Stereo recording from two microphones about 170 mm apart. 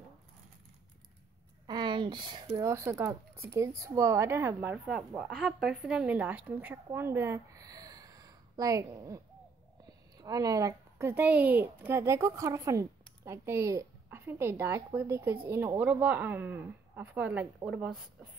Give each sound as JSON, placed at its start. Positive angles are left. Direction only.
{"t": 1.7, "sound": "a woman's voice", "side_deg": -25}